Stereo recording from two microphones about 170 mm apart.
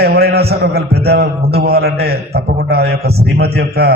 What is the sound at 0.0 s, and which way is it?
A man's voice, 70° right (ahead or behind).